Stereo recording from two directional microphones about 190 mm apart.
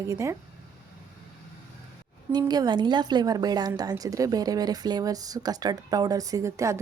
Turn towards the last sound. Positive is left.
turn(degrees=-15)  # may be behind; listen again after turning